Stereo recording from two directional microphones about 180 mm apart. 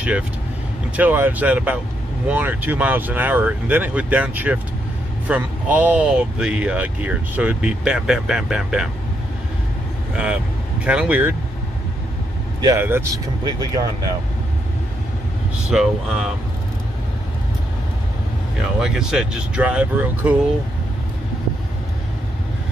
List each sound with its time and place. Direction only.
0.9 s speech: 10° right (ahead or behind)
10.1 s speech: 5° right (ahead or behind)
12.6 s speech: 15° right (ahead or behind)
15.7 s speech: 5° right (ahead or behind)
18.8 s speech: 5° right (ahead or behind)